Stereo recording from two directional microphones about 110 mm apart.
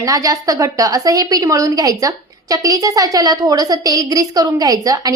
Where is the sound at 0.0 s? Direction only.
35° right (ahead or behind).